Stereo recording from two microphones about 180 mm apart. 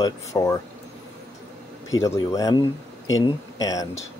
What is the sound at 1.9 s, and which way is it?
Speech, 15° left (ahead or behind).